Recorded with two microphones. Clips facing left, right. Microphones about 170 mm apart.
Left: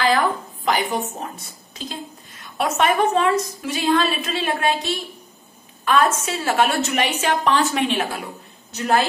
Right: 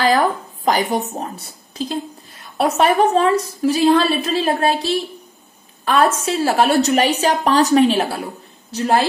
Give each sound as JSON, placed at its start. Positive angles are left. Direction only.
{"t": 0.7, "sound": "a woman's voice", "side_deg": -40}